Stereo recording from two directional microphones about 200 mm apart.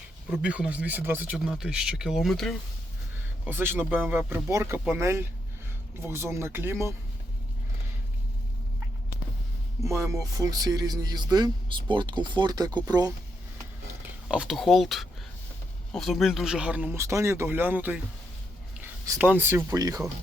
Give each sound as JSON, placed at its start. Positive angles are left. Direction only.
{"t": 0.3, "sound": "speech", "side_deg": -5}
{"t": 3.4, "sound": "speech", "side_deg": -10}
{"t": 9.8, "sound": "speech", "side_deg": -15}
{"t": 14.3, "sound": "speech", "side_deg": -5}
{"t": 19.0, "sound": "speech", "side_deg": -10}